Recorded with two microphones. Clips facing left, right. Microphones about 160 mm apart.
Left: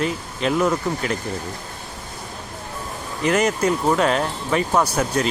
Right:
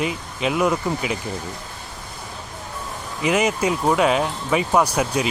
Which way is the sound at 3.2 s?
5° right (ahead or behind).